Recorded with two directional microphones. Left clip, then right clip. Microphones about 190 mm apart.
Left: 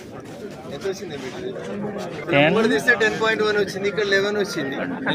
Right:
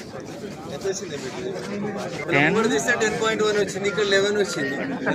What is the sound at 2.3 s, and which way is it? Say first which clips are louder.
Speech: left 3 dB; 35° left (ahead or behind).